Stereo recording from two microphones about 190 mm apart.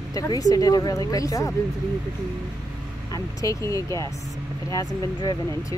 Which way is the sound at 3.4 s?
15° left (ahead or behind).